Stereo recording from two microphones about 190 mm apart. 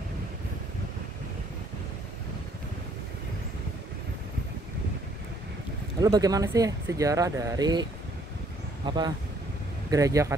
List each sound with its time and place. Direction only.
5.9 s speech: 20° right (ahead or behind)
8.8 s speech: 25° right (ahead or behind)